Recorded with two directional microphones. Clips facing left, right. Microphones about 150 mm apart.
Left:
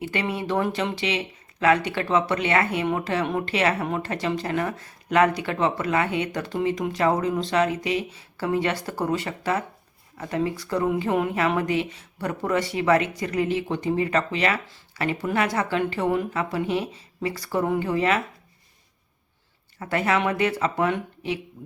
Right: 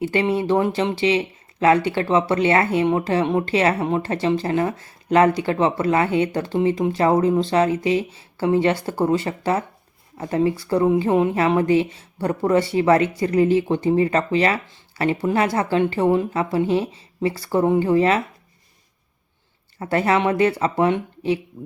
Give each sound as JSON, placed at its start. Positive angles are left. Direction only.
{"t": 0.0, "sound": "speech", "side_deg": -30}
{"t": 19.8, "sound": "speech", "side_deg": -35}